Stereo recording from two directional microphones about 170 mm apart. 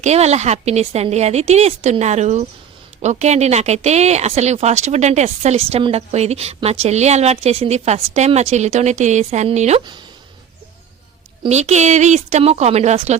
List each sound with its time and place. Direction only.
0.0 s speech: 40° right (ahead or behind)
11.4 s speech: 40° right (ahead or behind)